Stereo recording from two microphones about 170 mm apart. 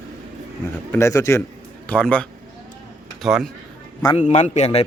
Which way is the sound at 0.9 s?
15° left (ahead or behind).